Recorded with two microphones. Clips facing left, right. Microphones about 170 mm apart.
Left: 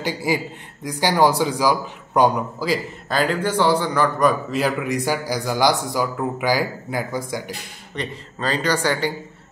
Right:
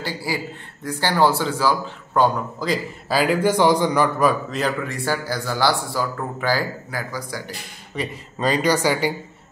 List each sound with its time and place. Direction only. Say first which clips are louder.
0.0 s a man's voice: left 4 dB; 20° left (ahead or behind)
2.6 s a man's voice: right 1 dB; centre (ahead or behind)
4.3 s a man's voice: left 1 dB; 5° left (ahead or behind); by 7.5 s 20° left (ahead or behind)
7.9 s a man's voice: right 1 dB; 10° right (ahead or behind)